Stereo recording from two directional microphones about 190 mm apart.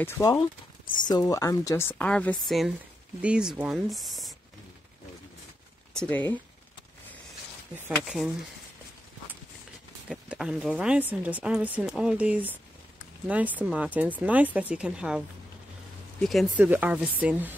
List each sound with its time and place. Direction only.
0.0 s a woman's voice: 20° left (ahead or behind); by 4.4 s centre (ahead or behind)
5.9 s a woman's voice: 10° left (ahead or behind)
10.0 s speech: 5° right (ahead or behind)